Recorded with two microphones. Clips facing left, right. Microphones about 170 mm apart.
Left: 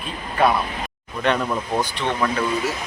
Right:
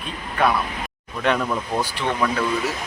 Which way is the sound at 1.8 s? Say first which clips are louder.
Even; 5° right (ahead or behind).